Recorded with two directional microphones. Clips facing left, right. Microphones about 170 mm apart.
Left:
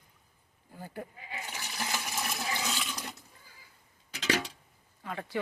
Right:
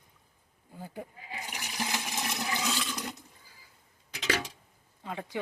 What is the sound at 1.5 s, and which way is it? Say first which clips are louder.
Toilet flush: right 2 dB; 15° right (ahead or behind).